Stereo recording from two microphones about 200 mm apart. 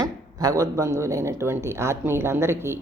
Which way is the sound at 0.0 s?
20° right (ahead or behind).